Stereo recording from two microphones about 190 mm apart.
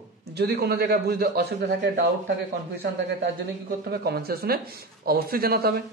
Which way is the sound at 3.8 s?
55° right (ahead or behind).